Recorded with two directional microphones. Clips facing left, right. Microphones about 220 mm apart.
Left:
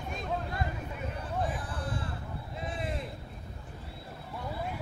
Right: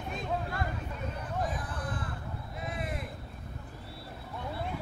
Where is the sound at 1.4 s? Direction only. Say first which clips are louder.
Left 1 dB; 30° left (ahead or behind).